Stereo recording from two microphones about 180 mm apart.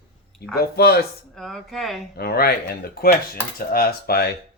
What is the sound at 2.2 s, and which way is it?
Speech, 60° left (ahead or behind).